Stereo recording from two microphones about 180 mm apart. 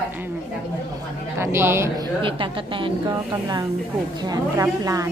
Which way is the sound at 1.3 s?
15° right (ahead or behind).